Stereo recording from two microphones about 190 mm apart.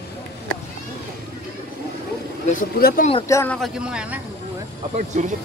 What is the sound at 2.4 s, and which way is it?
Speech, 50° left (ahead or behind).